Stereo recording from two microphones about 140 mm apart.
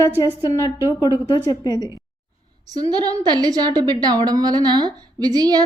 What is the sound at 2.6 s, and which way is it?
A woman's voice, 30° right (ahead or behind).